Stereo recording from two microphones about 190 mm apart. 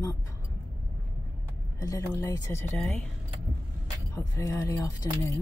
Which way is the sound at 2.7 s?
Centre (ahead or behind).